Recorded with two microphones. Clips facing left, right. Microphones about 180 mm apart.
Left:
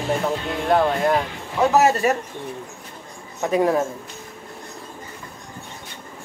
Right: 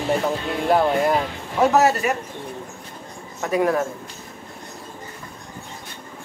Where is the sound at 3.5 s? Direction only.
25° left (ahead or behind).